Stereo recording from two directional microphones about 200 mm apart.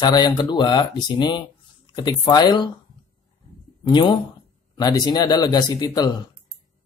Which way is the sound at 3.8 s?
25° left (ahead or behind).